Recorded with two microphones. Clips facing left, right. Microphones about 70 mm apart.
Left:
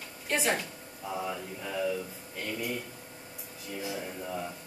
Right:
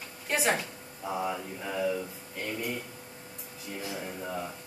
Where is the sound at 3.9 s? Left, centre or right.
Centre.